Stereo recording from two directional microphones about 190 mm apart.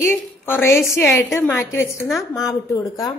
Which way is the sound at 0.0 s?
10° left (ahead or behind).